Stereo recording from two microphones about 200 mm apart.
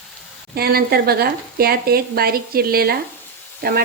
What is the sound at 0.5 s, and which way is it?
A woman's voice, 50° right (ahead or behind).